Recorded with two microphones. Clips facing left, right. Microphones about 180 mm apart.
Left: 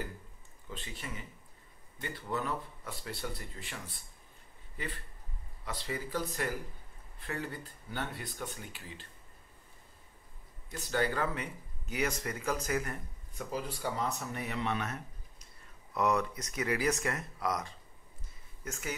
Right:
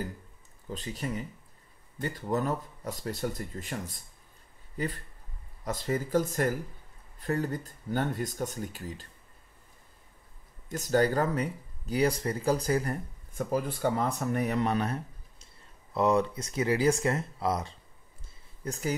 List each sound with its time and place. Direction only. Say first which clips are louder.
0.7 s speech: right 9 dB; 40° right (ahead or behind)
10.7 s speech: right 7 dB; 45° right (ahead or behind)
13.5 s speech: right 8 dB; 55° right (ahead or behind); by 18.9 s 35° right (ahead or behind)